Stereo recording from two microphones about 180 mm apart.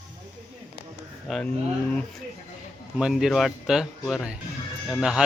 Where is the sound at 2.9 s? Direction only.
5° right (ahead or behind).